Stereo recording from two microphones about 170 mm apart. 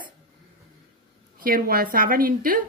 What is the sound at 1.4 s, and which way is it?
A woman's voice, 60° right (ahead or behind).